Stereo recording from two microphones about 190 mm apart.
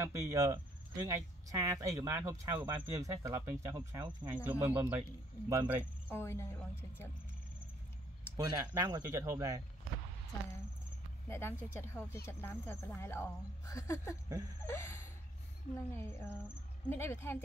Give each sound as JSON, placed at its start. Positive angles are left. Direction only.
{"t": 0.0, "sound": "speech", "side_deg": -15}
{"t": 4.4, "sound": "speech", "side_deg": -10}
{"t": 6.0, "sound": "speech", "side_deg": 15}
{"t": 8.4, "sound": "speech", "side_deg": -20}
{"t": 11.2, "sound": "speech", "side_deg": 10}